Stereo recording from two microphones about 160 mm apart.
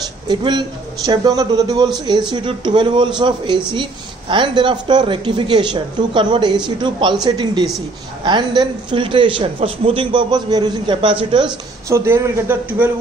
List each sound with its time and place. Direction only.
0.3 s a man's voice: 30° right (ahead or behind)
11.9 s a man's voice: 15° right (ahead or behind)